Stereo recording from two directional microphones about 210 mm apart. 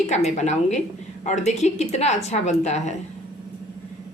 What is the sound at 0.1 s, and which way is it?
A woman's voice, 35° left (ahead or behind).